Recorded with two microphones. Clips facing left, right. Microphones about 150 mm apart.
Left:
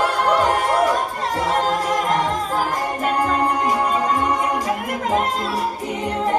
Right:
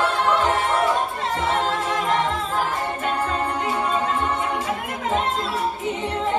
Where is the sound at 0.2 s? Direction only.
40° left (ahead or behind).